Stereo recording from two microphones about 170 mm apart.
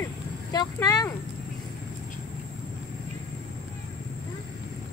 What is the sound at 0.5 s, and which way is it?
Speech, 20° left (ahead or behind).